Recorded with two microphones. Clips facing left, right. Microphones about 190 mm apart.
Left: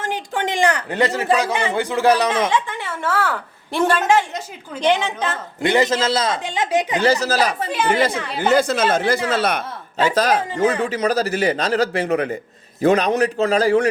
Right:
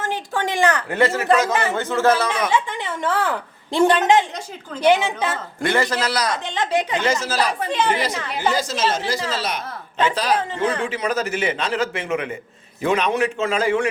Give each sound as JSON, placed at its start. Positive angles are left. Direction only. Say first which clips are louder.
{"t": 0.0, "sound": "speech", "louder": "left 1 dB", "side_deg": 15}
{"t": 2.5, "sound": "a woman's voice", "louder": "even", "side_deg": -15}
{"t": 5.6, "sound": "a man's voice", "louder": "left 4 dB", "side_deg": 20}
{"t": 6.4, "sound": "a woman's voice", "louder": "left 2 dB", "side_deg": 10}
{"t": 7.0, "sound": "a man's voice", "louder": "left 4 dB", "side_deg": 35}
{"t": 10.2, "sound": "a man's voice", "louder": "left 3 dB", "side_deg": 45}